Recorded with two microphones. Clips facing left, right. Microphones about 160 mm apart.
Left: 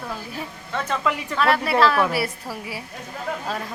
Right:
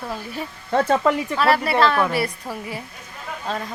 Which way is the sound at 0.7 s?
40° right (ahead or behind).